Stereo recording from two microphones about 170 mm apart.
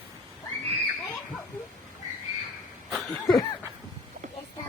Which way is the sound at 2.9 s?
Centre (ahead or behind).